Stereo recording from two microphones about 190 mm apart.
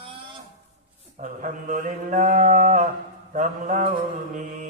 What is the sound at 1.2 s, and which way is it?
Livestock, 45° right (ahead or behind).